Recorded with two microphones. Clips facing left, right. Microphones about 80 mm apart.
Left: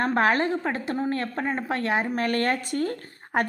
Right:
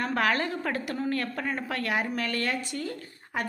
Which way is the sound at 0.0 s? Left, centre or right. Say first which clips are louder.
Left 5 dB; left.